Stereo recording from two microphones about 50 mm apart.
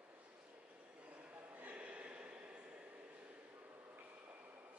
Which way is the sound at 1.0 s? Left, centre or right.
Right.